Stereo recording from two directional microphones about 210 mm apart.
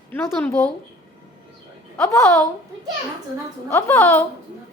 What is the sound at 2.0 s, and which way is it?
Speech, 15° left (ahead or behind).